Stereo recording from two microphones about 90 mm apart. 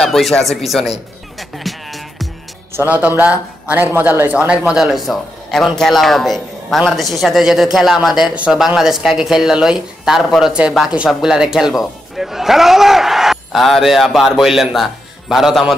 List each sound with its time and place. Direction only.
0.0 s a man's voice: 5° left (ahead or behind)
1.6 s music: centre (ahead or behind)
2.7 s a man's voice: 20° right (ahead or behind); by 15.7 s 5° right (ahead or behind)